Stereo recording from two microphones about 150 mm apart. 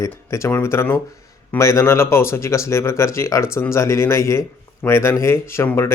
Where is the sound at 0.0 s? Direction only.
20° left (ahead or behind).